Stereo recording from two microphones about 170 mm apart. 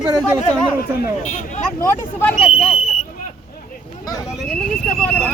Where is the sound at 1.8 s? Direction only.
10° left (ahead or behind).